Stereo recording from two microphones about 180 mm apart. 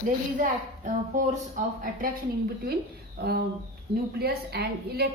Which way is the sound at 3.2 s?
70° right (ahead or behind).